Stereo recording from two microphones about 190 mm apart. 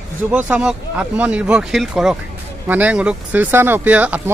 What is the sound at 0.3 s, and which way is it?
Speech, 5° right (ahead or behind).